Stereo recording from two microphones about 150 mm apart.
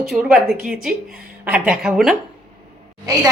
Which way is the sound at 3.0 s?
25° right (ahead or behind).